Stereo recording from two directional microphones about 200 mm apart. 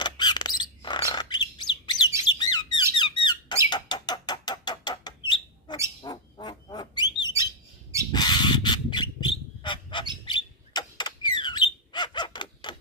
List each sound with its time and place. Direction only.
0.0 s bird: 20° left (ahead or behind)
2.3 s squeak: 20° left (ahead or behind)
6.0 s bird: 20° left (ahead or behind)